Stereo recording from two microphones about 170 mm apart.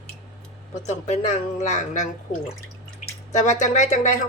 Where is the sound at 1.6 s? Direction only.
45° left (ahead or behind).